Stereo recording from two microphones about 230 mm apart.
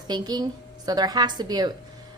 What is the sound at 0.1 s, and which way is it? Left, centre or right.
A woman's voice, centre.